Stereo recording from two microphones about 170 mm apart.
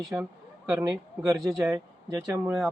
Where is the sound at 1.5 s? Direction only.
5° right (ahead or behind).